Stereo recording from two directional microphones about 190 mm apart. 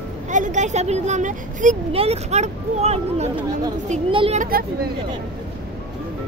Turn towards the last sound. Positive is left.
turn(degrees=-50)  # may be behind; listen again after turning